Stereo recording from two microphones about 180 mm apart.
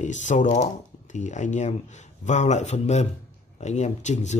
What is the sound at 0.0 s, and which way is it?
Speech, 40° left (ahead or behind).